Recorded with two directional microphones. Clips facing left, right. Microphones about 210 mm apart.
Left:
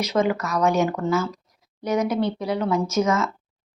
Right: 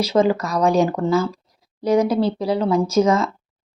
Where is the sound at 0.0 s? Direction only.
30° right (ahead or behind).